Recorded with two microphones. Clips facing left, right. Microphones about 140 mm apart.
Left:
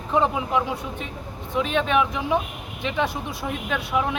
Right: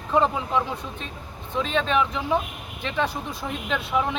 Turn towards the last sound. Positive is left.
turn(degrees=10)  # may be behind; listen again after turning